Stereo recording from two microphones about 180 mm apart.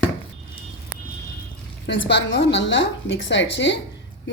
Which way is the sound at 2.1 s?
80° left.